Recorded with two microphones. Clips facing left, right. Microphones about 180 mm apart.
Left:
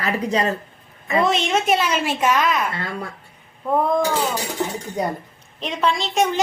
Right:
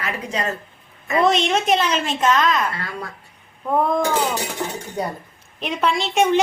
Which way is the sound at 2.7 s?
25° left (ahead or behind).